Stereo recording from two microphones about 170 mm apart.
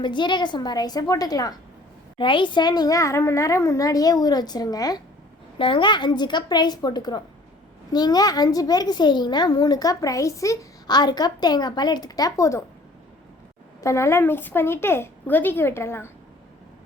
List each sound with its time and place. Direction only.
0.0 s a child's voice: 25° left (ahead or behind)
13.8 s a woman's voice: 15° left (ahead or behind)